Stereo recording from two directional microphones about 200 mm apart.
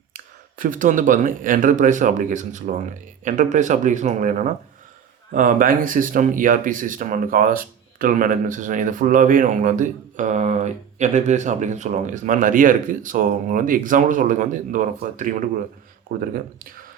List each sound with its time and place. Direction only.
0.6 s speech: 40° right (ahead or behind)